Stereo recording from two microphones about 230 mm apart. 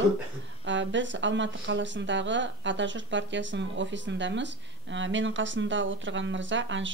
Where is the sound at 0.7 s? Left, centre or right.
Right.